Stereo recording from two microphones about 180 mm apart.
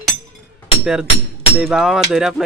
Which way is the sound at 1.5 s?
5° right (ahead or behind).